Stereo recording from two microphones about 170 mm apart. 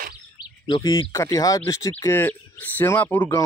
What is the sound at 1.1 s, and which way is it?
Speech, 20° left (ahead or behind).